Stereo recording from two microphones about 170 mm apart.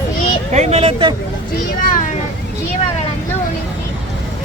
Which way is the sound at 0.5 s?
40° right (ahead or behind).